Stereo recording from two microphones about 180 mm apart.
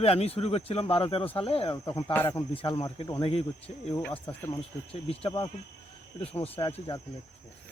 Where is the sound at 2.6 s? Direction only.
30° left (ahead or behind).